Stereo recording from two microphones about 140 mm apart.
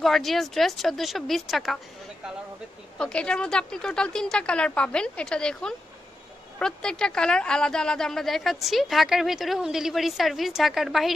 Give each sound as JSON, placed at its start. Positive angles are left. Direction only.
{"t": 0.0, "sound": "a woman's voice", "side_deg": 0}
{"t": 3.0, "sound": "a woman's voice", "side_deg": 5}